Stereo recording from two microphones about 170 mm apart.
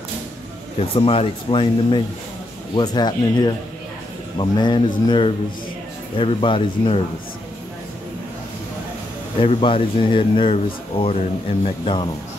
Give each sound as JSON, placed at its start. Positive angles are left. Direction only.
{"t": 0.7, "sound": "a man's voice", "side_deg": 35}
{"t": 9.4, "sound": "speech", "side_deg": 30}